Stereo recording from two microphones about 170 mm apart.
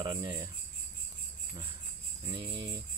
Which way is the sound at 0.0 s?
25° right (ahead or behind).